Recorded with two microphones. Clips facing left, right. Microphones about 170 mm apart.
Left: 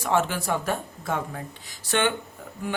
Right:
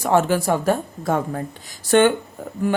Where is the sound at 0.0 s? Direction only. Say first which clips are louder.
Right 7 dB; 40° right (ahead or behind).